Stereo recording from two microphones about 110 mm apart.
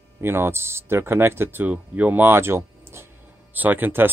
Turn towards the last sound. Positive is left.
turn(degrees=-20)  # may be behind; listen again after turning